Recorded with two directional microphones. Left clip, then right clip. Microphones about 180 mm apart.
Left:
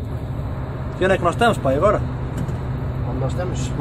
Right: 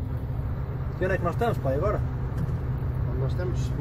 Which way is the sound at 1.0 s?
10° left (ahead or behind).